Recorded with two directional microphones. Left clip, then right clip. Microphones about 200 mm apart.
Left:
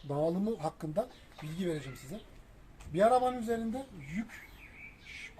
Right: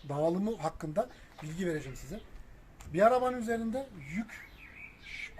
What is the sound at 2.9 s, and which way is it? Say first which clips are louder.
Speech: right 1 dB; 10° left (ahead or behind).